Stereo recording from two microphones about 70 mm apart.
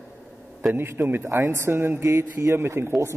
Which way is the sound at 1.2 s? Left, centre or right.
Right.